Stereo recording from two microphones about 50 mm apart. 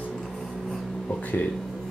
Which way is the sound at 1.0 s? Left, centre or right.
Left.